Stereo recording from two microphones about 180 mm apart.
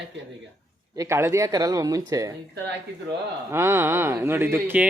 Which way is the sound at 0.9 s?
15° right (ahead or behind).